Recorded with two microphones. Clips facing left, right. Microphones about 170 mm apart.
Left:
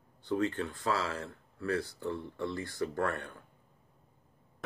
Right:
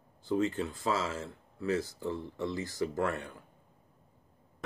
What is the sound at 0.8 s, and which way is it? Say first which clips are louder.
Speech: even; 20° right (ahead or behind).